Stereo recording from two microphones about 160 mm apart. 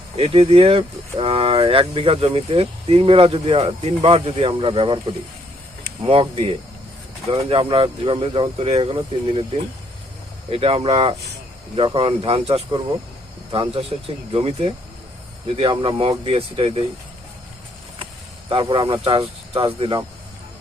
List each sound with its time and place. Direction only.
0.2 s speech: 35° right (ahead or behind)
6.0 s speech: 35° right (ahead or behind)
18.0 s speech: 35° right (ahead or behind)